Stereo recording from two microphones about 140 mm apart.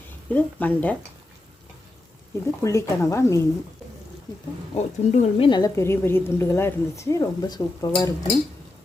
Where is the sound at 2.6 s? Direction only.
20° left (ahead or behind).